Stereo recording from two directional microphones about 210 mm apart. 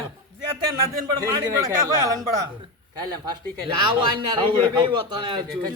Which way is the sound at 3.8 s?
20° right (ahead or behind).